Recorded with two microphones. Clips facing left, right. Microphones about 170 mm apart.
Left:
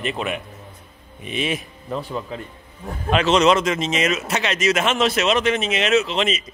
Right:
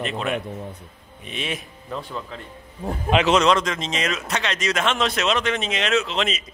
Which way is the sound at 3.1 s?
15° right (ahead or behind).